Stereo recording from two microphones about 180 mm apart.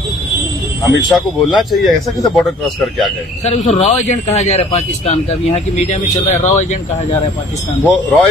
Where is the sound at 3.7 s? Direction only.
40° left (ahead or behind).